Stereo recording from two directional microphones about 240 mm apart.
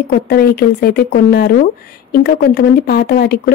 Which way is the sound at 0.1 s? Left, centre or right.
Left.